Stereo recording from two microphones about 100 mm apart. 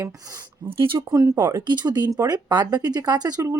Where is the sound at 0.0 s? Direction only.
40° right (ahead or behind).